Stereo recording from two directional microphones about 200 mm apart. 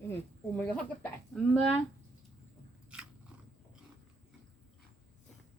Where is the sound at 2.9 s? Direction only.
5° right (ahead or behind).